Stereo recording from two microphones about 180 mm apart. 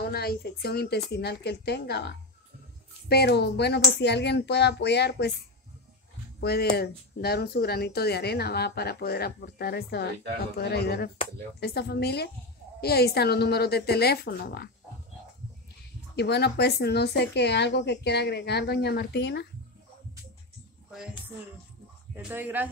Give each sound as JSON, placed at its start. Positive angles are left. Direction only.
{"t": 0.0, "sound": "speech", "side_deg": 60}
{"t": 6.4, "sound": "speech", "side_deg": 60}
{"t": 16.2, "sound": "speech", "side_deg": 65}
{"t": 22.1, "sound": "speech", "side_deg": -10}